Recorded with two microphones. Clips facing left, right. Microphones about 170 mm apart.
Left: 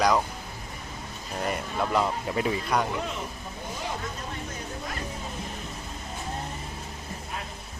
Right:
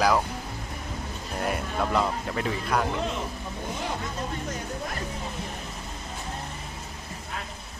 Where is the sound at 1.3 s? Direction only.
Centre (ahead or behind).